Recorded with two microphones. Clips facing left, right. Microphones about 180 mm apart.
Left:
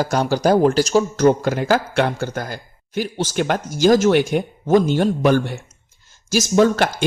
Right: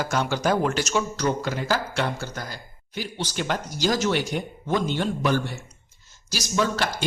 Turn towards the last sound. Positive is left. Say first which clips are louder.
# left 9 dB
turn(degrees=50)  # may be behind; listen again after turning